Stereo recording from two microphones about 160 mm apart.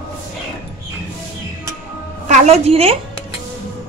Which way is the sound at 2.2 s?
45° right (ahead or behind).